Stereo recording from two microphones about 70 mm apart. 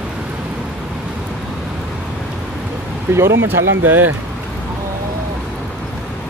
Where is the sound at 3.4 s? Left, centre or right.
Right.